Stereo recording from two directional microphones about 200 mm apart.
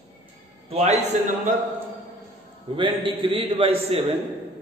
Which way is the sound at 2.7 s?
25° right (ahead or behind).